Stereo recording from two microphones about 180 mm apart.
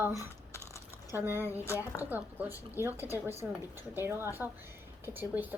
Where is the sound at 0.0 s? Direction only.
15° right (ahead or behind).